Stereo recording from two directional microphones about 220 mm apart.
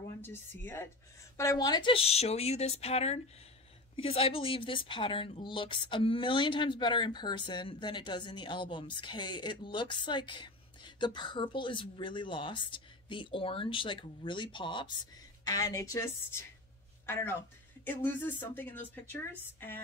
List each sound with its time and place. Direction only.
0.2 s a woman's voice: 10° left (ahead or behind)